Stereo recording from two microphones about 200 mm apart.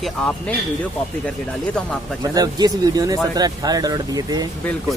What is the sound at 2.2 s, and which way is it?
Speech, 20° right (ahead or behind).